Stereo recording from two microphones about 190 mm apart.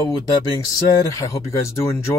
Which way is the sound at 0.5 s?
15° left (ahead or behind).